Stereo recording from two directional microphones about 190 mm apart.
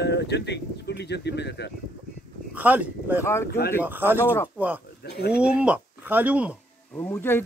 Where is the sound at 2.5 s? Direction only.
10° right (ahead or behind).